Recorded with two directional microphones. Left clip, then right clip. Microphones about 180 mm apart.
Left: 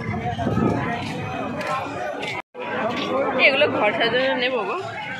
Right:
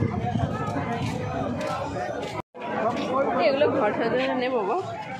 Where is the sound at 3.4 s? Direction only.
30° right (ahead or behind).